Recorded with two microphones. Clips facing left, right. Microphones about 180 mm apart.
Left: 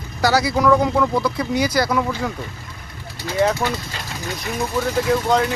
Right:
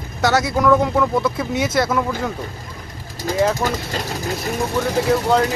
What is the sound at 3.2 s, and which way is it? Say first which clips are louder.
Speech: right 3 dB; 45° right (ahead or behind).